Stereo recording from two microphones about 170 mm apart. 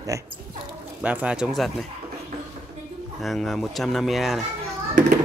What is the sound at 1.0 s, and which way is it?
Speech, 5° right (ahead or behind).